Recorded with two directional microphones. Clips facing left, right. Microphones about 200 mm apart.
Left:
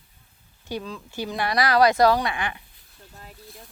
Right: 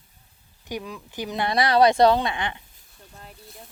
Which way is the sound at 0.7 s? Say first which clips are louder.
Left 1 dB; 15° right (ahead or behind).